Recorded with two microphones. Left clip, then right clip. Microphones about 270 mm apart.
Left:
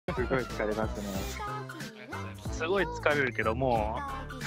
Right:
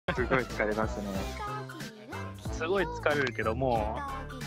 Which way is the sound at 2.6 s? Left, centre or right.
Centre.